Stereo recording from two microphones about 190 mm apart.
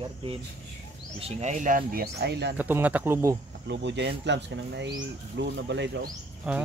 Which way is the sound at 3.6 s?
65° right (ahead or behind).